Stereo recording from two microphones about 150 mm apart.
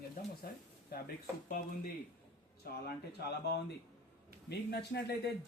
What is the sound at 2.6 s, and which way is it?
Speech, 90° left.